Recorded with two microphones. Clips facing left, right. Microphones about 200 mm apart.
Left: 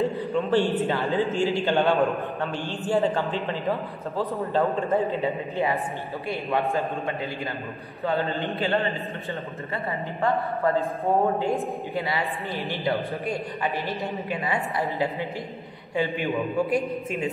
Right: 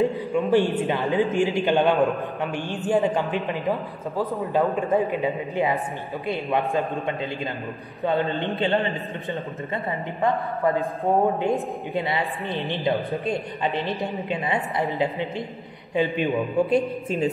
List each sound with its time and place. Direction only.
0.0 s a man's voice: 15° right (ahead or behind)
10.2 s a man's voice: 15° right (ahead or behind)
16.7 s a woman's voice: 30° right (ahead or behind)